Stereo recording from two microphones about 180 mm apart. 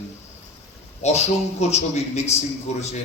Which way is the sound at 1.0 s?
35° left (ahead or behind).